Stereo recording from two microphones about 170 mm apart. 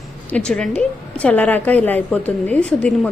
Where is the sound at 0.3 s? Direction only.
5° left (ahead or behind).